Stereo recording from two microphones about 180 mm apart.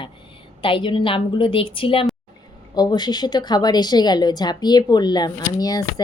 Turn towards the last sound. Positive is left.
turn(degrees=20)  # may be behind; listen again after turning